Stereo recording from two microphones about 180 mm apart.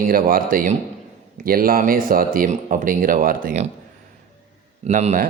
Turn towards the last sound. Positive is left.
turn(degrees=-45)  # may be behind; listen again after turning